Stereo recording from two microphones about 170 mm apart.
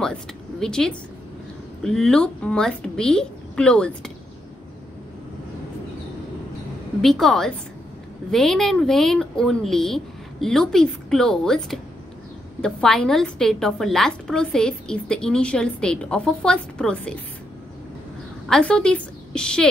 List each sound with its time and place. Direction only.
0.0 s a woman's voice: 5° left (ahead or behind)
7.0 s a woman's voice: centre (ahead or behind)
18.5 s a woman's voice: 5° left (ahead or behind)